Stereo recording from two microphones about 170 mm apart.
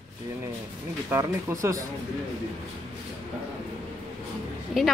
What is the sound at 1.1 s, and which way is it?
Speech, 15° right (ahead or behind).